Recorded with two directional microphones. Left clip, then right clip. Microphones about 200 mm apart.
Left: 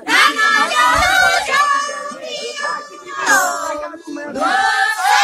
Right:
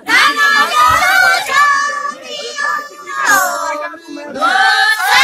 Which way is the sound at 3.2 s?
40° left (ahead or behind).